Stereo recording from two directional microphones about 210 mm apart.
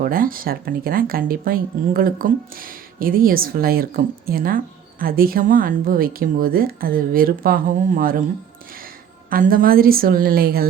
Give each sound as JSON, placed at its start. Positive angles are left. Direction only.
{"t": 0.0, "sound": "speech", "side_deg": -40}
{"t": 9.3, "sound": "speech", "side_deg": -40}